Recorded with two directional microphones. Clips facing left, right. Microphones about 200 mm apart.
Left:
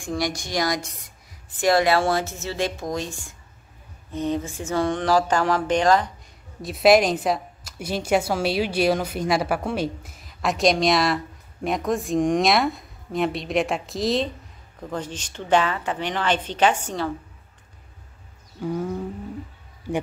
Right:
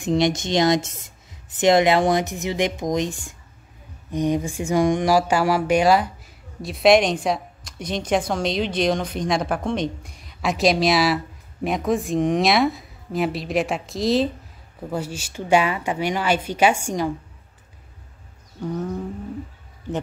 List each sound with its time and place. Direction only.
0.0 s a woman's voice: 20° right (ahead or behind)
6.6 s a woman's voice: centre (ahead or behind)
18.6 s wild animals: 10° left (ahead or behind)